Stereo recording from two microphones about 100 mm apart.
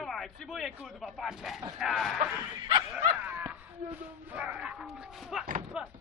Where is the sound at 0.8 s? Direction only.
5° right (ahead or behind).